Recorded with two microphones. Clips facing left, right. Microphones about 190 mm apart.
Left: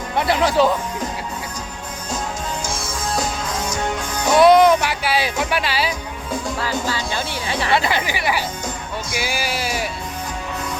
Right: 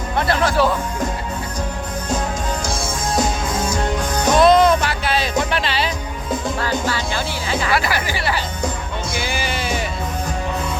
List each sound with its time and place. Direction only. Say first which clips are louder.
0.2 s speech: left 1 dB; 15° left (ahead or behind)
4.4 s music: left 2 dB; 10° left (ahead or behind)
7.7 s speech: left 4 dB; 25° left (ahead or behind)
9.1 s music: left 1 dB; 5° left (ahead or behind)